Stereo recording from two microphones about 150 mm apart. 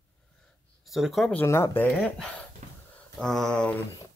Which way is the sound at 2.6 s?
55° right (ahead or behind).